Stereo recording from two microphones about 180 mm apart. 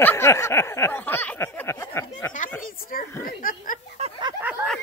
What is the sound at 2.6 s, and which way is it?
Speech, 55° left (ahead or behind).